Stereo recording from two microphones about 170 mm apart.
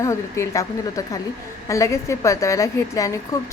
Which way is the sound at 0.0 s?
20° left (ahead or behind).